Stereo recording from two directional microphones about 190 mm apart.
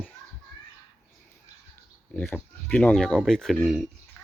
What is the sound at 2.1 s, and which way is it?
Speech, 5° left (ahead or behind).